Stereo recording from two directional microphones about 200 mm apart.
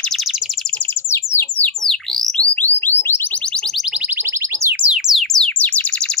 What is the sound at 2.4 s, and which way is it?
Alarm, 10° left (ahead or behind).